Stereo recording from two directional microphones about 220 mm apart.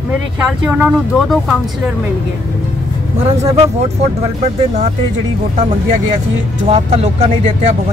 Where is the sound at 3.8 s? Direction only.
30° right (ahead or behind).